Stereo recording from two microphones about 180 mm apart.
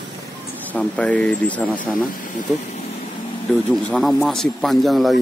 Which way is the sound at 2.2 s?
45° left (ahead or behind).